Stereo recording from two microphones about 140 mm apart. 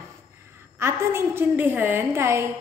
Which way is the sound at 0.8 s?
20° right (ahead or behind).